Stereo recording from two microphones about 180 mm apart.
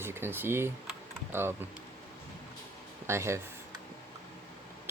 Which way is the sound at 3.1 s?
15° right (ahead or behind).